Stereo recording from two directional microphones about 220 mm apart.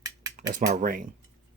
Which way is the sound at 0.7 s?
40° right (ahead or behind).